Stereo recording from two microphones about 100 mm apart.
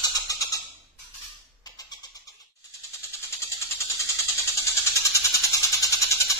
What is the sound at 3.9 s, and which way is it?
Music, 30° left (ahead or behind).